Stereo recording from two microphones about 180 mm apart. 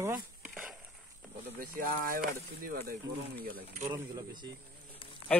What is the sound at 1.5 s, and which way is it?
Speech, 50° right (ahead or behind).